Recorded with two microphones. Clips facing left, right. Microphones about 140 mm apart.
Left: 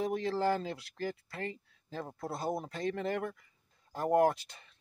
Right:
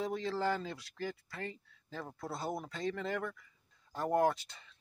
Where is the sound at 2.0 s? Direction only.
25° left (ahead or behind).